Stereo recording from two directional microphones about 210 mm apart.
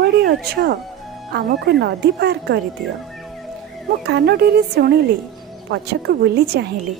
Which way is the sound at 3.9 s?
50° right (ahead or behind).